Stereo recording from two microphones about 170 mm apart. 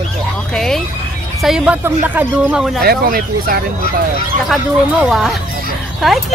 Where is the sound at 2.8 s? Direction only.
65° right (ahead or behind).